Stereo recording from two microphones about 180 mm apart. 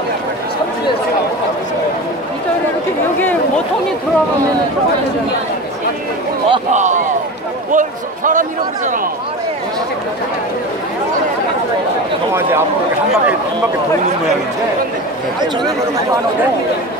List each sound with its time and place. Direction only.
3.2 s chatter: 10° left (ahead or behind)
6.7 s a man's voice: 40° right (ahead or behind)